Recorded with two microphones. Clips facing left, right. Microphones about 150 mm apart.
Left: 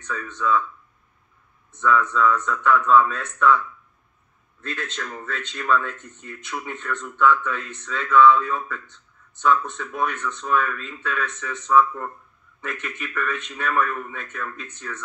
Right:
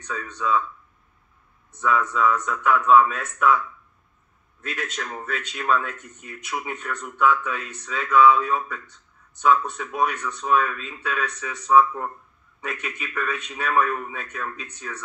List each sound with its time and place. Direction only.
0.0 s speech: 15° right (ahead or behind)
1.8 s speech: 15° right (ahead or behind)
5.0 s speech: 15° right (ahead or behind)
5.9 s speech: 20° left (ahead or behind)
6.3 s speech: 15° right (ahead or behind)